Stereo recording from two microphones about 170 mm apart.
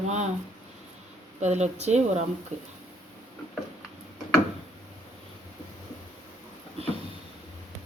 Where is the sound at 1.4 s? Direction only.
40° right (ahead or behind).